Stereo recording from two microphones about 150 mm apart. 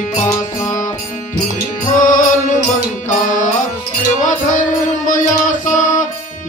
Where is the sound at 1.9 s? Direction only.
60° left (ahead or behind).